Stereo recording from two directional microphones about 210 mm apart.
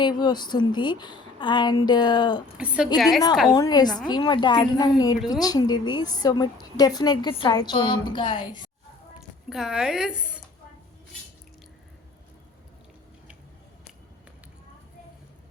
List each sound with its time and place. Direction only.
0.0 s a woman's voice: 20° left (ahead or behind)
2.6 s a woman's voice: 5° right (ahead or behind)
3.5 s a woman's voice: 20° left (ahead or behind)
9.5 s a woman's voice: centre (ahead or behind)